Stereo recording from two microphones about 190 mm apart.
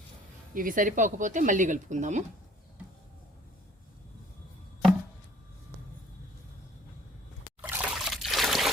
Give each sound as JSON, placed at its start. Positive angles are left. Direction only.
{"t": 0.5, "sound": "speech", "side_deg": -45}
{"t": 7.6, "sound": "trickle", "side_deg": -5}